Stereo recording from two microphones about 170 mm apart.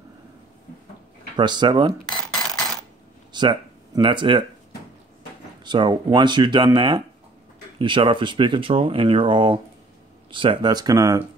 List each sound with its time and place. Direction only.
1.3 s speech: 25° right (ahead or behind)
3.3 s speech: 25° right (ahead or behind)
5.6 s speech: 25° right (ahead or behind)